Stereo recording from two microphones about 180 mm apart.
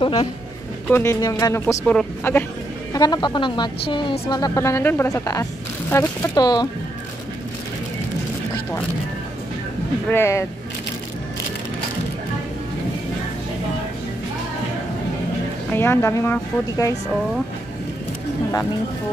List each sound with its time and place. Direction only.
0.0 s a man's voice: 30° left (ahead or behind)
0.8 s speech: 10° left (ahead or behind)
2.9 s speech: 20° left (ahead or behind)
10.1 s speech: 15° left (ahead or behind)
15.7 s speech: 10° left (ahead or behind)